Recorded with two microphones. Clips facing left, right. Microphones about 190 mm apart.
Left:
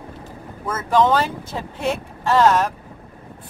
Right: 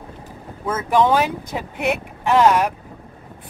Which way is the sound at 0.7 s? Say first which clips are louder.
Even; 15° right (ahead or behind).